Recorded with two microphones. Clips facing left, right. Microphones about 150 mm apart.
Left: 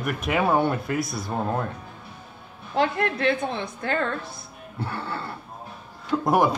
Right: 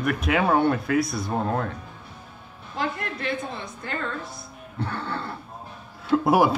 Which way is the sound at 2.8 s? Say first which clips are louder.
Left 6 dB; 65° left (ahead or behind).